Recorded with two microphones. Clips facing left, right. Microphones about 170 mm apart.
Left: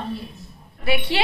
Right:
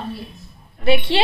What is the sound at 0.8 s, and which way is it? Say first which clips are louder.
Speech: right 5 dB; 25° right (ahead or behind).